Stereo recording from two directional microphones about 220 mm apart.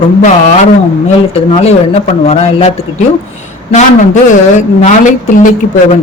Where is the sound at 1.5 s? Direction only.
30° left (ahead or behind).